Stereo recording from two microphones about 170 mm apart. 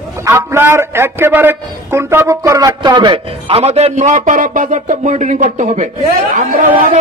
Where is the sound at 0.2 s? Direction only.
15° right (ahead or behind).